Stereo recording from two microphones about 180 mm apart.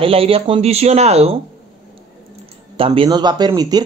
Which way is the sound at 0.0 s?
30° right (ahead or behind).